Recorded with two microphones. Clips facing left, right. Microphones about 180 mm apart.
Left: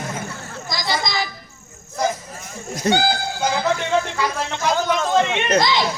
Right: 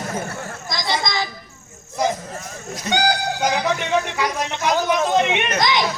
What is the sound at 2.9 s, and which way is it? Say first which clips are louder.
Speech: right 5 dB; 15° right (ahead or behind).